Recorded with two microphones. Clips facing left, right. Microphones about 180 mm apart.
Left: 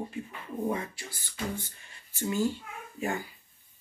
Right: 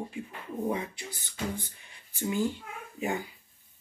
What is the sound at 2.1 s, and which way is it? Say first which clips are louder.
Speech: left 1 dB; 15° right (ahead or behind).